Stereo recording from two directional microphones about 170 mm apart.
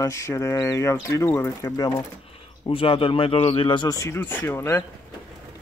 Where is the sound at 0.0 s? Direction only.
15° left (ahead or behind).